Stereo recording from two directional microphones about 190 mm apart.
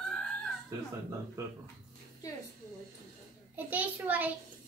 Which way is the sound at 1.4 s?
15° right (ahead or behind).